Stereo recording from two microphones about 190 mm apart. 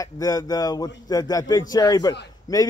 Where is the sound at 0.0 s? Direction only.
20° left (ahead or behind).